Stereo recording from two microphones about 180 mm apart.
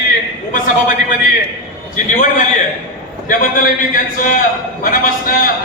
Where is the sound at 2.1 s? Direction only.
45° left (ahead or behind).